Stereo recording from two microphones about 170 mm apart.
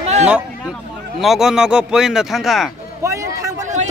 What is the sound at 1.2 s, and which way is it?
A man's voice, centre (ahead or behind).